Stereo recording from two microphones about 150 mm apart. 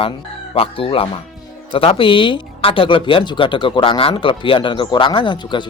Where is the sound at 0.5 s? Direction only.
40° left (ahead or behind).